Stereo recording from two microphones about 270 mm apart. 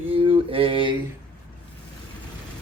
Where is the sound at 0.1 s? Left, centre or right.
Centre.